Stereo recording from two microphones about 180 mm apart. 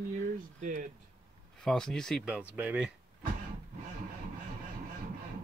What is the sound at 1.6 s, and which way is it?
Speech, 5° left (ahead or behind).